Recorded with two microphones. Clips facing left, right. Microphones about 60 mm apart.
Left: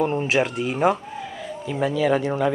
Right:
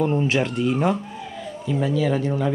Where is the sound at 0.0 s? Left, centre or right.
Centre.